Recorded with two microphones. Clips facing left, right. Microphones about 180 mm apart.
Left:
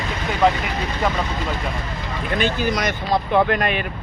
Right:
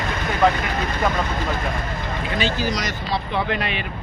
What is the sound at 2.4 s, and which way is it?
Speech, 55° left (ahead or behind).